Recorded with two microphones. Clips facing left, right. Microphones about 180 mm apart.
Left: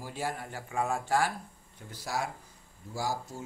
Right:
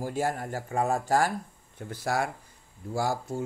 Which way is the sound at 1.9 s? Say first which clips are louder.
Right 6 dB; 55° right (ahead or behind).